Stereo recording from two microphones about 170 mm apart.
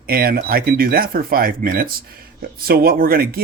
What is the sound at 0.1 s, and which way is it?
Speech, 60° right (ahead or behind).